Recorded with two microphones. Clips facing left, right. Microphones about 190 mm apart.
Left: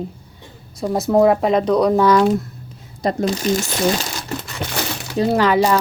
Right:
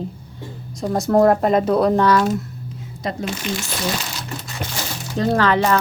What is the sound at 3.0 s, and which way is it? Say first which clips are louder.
Speech: left 6 dB; 40° left (ahead or behind).